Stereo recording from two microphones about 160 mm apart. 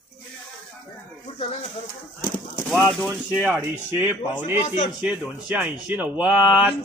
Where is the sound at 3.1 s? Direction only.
15° right (ahead or behind).